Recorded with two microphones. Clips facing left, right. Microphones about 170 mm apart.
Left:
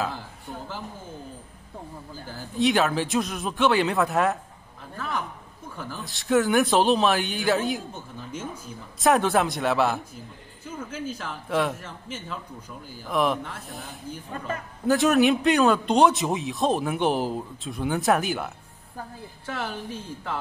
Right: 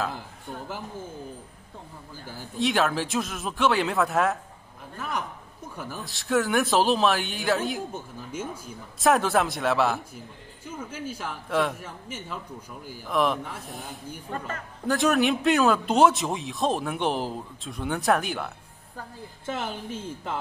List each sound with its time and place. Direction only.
2.5 s a man's voice: centre (ahead or behind)
5.9 s a man's voice: centre (ahead or behind)
9.0 s a man's voice: centre (ahead or behind)
11.4 s a man's voice: centre (ahead or behind)
14.5 s a man's voice: centre (ahead or behind)
19.4 s speech: 20° right (ahead or behind)